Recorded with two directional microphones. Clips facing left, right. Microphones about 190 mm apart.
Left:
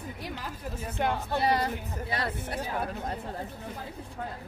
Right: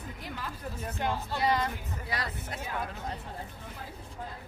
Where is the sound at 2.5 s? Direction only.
35° left (ahead or behind).